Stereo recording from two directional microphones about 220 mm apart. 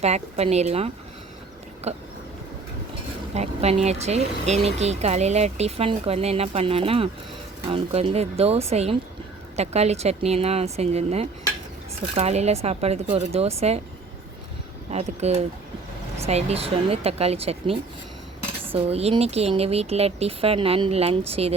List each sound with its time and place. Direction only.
0.0 s speech: 30° right (ahead or behind)
1.9 s speech: 30° right (ahead or behind)
3.3 s speech: 30° right (ahead or behind)
14.8 s speech: 30° right (ahead or behind)